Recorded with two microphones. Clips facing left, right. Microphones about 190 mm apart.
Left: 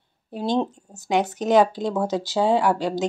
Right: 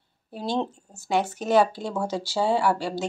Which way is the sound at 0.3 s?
15° left (ahead or behind).